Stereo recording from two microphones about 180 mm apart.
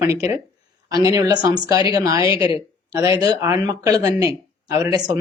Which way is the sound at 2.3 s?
30° left (ahead or behind).